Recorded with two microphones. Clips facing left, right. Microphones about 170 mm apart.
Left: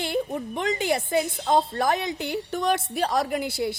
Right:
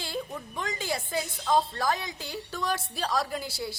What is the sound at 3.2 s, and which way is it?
Speech, 60° left (ahead or behind).